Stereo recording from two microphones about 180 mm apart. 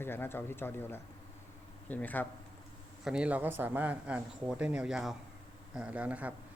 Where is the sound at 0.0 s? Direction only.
10° left (ahead or behind).